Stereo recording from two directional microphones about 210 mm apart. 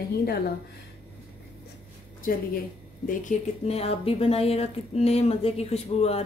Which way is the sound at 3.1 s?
35° left (ahead or behind).